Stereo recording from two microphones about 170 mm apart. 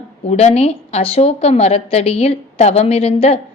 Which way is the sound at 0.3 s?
40° left (ahead or behind).